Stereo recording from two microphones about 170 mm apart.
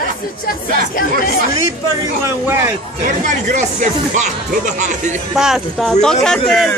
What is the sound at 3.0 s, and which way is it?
Speech, 45° right (ahead or behind).